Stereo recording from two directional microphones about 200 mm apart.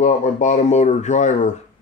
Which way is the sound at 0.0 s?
35° left (ahead or behind).